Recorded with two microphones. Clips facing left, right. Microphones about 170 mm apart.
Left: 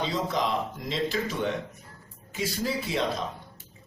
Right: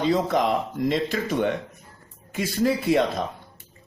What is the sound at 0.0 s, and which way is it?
A man's voice, 55° right (ahead or behind).